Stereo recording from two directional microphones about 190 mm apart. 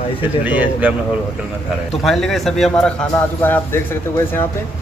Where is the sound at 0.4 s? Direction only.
10° right (ahead or behind).